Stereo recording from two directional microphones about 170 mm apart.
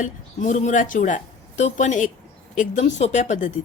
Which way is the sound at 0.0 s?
45° left (ahead or behind).